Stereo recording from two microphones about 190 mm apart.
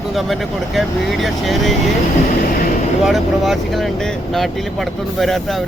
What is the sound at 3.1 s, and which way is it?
Speech, centre (ahead or behind).